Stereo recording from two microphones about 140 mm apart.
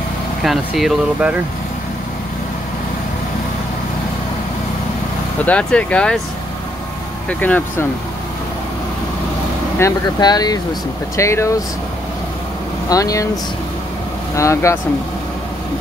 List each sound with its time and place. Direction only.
0.4 s speech: centre (ahead or behind)
5.4 s speech: 10° left (ahead or behind)
7.2 s speech: 10° left (ahead or behind)
9.8 s speech: 25° left (ahead or behind)
12.9 s speech: 25° left (ahead or behind)
14.3 s speech: 20° left (ahead or behind)